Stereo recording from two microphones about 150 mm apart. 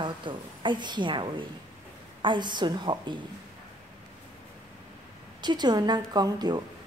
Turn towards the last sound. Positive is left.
turn(degrees=-25)  # may be behind; listen again after turning